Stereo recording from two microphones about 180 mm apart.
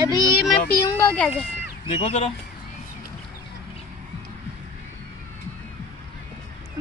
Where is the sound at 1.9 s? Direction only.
35° left (ahead or behind).